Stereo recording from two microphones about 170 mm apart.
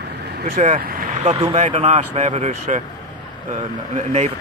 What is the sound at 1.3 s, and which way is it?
Speech, 35° right (ahead or behind).